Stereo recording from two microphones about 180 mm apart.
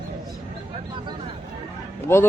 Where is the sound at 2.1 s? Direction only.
15° left (ahead or behind).